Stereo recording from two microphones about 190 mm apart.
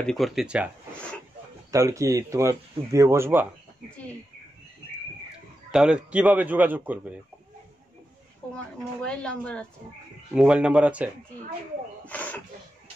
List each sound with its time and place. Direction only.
0.0 s speech: centre (ahead or behind)
1.7 s speech: 15° right (ahead or behind)
5.7 s speech: 5° right (ahead or behind)
8.5 s speech: 5° left (ahead or behind)
10.3 s speech: 5° right (ahead or behind)
12.1 s speech: 10° left (ahead or behind)